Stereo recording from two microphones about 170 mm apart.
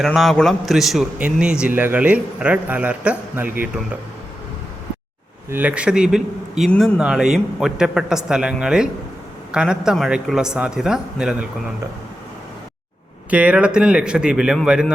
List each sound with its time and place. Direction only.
0.0 s a man's voice: centre (ahead or behind)
5.5 s speech: 10° right (ahead or behind)
13.3 s speech: 5° right (ahead or behind)